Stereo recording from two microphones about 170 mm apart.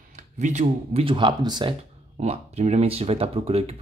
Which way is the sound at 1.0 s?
25° right (ahead or behind).